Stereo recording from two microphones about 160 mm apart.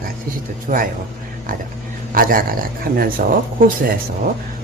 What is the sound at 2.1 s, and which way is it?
Speech, 60° right (ahead or behind).